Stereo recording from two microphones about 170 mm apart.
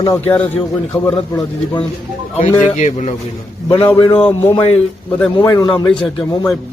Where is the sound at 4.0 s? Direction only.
30° left (ahead or behind).